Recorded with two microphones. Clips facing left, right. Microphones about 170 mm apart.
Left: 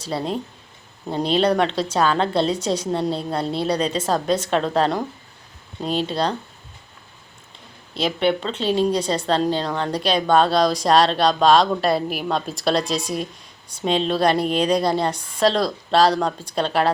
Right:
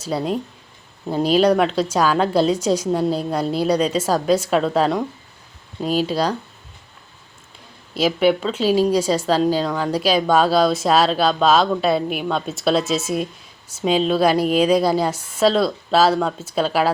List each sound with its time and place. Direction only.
1.1 s a woman's voice: 5° right (ahead or behind)
2.6 s a woman's voice: 30° left (ahead or behind)
2.8 s a woman's voice: 5° right (ahead or behind)
7.9 s speech: 5° right (ahead or behind)